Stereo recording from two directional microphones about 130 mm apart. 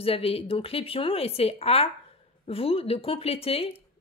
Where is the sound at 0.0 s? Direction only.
45° left (ahead or behind).